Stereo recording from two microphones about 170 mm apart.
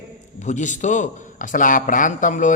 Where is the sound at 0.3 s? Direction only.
45° left (ahead or behind).